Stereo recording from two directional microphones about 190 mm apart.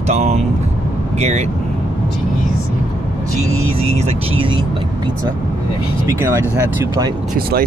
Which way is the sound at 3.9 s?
35° right (ahead or behind).